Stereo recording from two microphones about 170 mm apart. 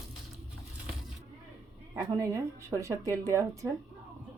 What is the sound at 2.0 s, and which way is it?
Speech, 20° right (ahead or behind).